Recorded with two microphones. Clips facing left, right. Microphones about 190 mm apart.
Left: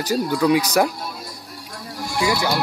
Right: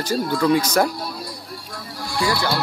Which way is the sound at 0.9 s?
45° left (ahead or behind).